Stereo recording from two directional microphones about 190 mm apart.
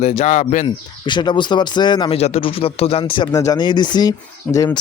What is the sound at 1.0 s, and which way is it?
Speech, 25° left (ahead or behind).